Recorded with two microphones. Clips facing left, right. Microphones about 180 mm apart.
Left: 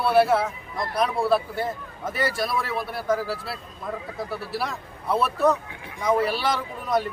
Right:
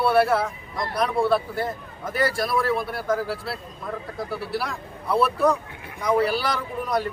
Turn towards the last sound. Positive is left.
turn(degrees=0)  # may be behind; listen again after turning